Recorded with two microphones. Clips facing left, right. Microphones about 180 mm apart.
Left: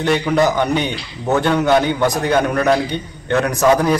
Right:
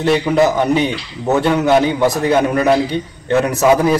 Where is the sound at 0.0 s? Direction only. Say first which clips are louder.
Right 2 dB; 5° right (ahead or behind).